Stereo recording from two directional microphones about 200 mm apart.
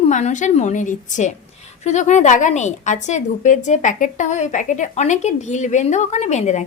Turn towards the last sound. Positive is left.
turn(degrees=35)  # may be behind; listen again after turning